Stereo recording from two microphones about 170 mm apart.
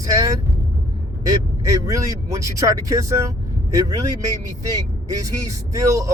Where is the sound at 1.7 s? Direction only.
20° right (ahead or behind).